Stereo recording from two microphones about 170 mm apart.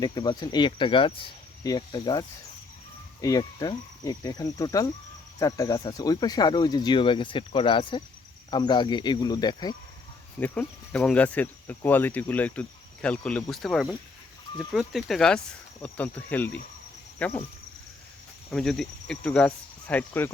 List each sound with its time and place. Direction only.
0.0 s speech: 25° left (ahead or behind)
10.4 s speech: 10° left (ahead or behind)
18.5 s speech: centre (ahead or behind)